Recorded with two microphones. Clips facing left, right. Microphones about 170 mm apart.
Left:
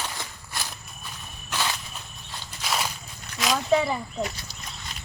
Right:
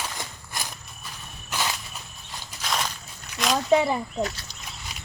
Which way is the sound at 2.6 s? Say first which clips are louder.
Even; 5° left (ahead or behind).